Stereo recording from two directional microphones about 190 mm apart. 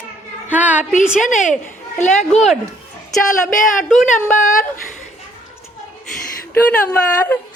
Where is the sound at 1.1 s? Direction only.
40° left (ahead or behind).